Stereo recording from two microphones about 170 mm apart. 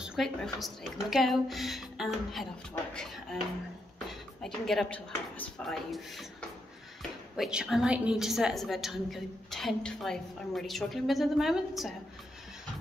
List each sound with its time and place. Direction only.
0.0 s a woman's voice: centre (ahead or behind)